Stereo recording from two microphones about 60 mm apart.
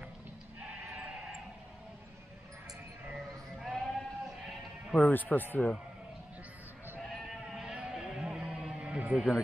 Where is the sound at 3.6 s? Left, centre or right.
Centre.